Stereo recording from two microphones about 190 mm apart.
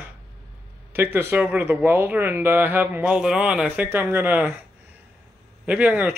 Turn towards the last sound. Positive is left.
turn(degrees=-10)  # may be behind; listen again after turning